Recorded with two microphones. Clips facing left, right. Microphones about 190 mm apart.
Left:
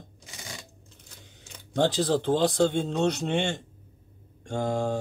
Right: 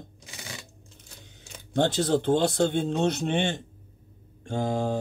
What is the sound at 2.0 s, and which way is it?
Speech, 20° right (ahead or behind).